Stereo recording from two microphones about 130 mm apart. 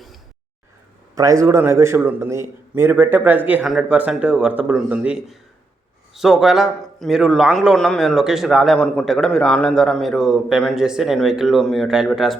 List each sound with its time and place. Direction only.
1.1 s a man's voice: 25° right (ahead or behind); by 12.4 s centre (ahead or behind)